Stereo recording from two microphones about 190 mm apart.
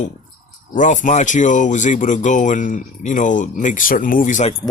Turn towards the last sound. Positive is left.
turn(degrees=40)  # may be behind; listen again after turning